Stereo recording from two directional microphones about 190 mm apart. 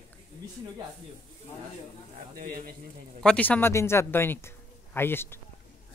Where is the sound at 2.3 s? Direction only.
50° right (ahead or behind).